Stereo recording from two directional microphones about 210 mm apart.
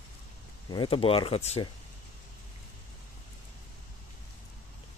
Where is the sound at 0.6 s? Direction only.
25° left (ahead or behind).